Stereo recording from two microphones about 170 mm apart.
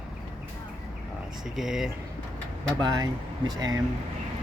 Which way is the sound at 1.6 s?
Centre (ahead or behind).